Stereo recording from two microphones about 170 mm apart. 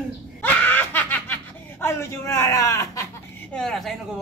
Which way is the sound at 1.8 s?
15° left (ahead or behind).